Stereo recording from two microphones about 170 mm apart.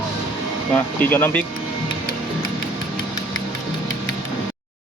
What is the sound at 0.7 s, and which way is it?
Speech, 10° left (ahead or behind).